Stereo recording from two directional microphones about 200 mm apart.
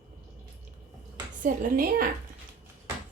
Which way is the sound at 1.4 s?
45° right (ahead or behind).